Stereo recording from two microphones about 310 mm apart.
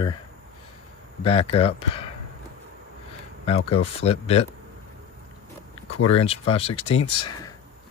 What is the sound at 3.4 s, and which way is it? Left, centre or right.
Speech, centre.